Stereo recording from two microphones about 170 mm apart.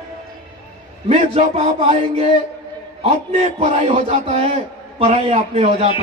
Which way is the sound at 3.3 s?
45° right (ahead or behind).